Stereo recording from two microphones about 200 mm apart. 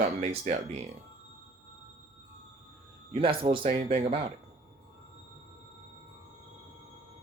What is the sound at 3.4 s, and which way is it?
Speech, 25° right (ahead or behind).